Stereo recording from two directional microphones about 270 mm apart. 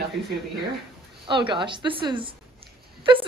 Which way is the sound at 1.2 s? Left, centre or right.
Centre.